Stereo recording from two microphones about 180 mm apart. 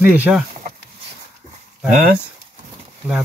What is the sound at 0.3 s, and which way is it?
Speech, 10° right (ahead or behind).